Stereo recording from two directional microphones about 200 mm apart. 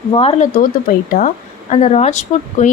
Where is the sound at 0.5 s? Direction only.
40° left (ahead or behind).